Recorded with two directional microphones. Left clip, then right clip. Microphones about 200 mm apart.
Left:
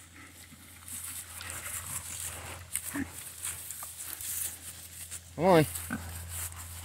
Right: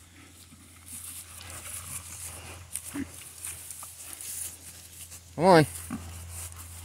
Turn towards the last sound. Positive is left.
turn(degrees=15)  # may be behind; listen again after turning